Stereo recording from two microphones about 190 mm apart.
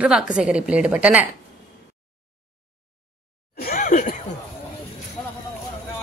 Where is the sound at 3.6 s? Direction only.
50° left (ahead or behind).